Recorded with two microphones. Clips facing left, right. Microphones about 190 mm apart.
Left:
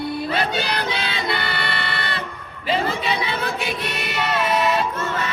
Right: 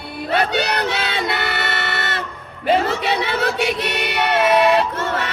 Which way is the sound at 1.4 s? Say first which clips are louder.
Right 3 dB; 60° right (ahead or behind).